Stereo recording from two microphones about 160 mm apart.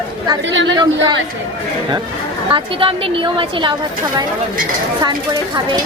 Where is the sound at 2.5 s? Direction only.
35° right (ahead or behind).